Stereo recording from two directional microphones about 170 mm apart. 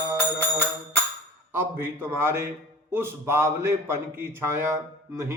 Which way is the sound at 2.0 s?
15° right (ahead or behind).